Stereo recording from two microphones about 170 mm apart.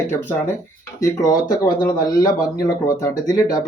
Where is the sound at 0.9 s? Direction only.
20° left (ahead or behind).